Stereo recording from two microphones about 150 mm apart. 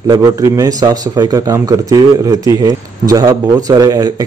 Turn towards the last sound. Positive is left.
turn(degrees=-25)  # may be behind; listen again after turning